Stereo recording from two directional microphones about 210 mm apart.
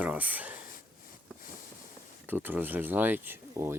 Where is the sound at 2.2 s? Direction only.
10° right (ahead or behind).